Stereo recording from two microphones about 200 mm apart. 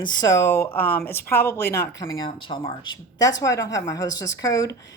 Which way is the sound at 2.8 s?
80° left.